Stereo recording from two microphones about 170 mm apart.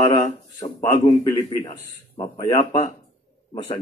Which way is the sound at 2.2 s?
25° left (ahead or behind).